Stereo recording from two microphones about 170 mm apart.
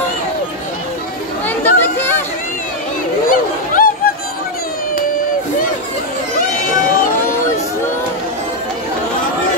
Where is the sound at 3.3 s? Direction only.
55° left (ahead or behind).